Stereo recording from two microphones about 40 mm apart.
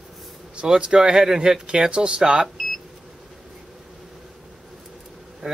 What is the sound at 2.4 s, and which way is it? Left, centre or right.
Beep, centre.